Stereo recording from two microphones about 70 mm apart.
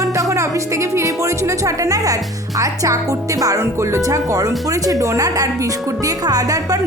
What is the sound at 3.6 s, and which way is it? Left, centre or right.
A woman's voice, right.